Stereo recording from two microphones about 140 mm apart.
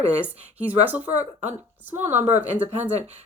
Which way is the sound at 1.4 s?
55° right (ahead or behind).